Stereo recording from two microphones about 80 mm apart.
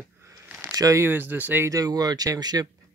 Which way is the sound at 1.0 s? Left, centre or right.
Right.